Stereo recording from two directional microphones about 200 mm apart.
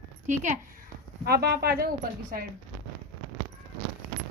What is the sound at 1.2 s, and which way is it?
Speech, 50° right (ahead or behind).